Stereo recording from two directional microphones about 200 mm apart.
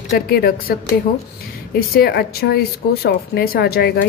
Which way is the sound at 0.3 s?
50° left (ahead or behind).